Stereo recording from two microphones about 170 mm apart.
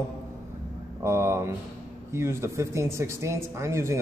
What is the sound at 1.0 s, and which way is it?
A man's voice, 15° right (ahead or behind).